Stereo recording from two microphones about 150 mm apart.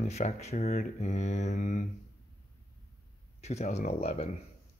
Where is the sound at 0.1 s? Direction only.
50° left (ahead or behind).